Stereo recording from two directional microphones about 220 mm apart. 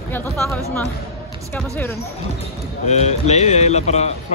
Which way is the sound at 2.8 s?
30° left (ahead or behind).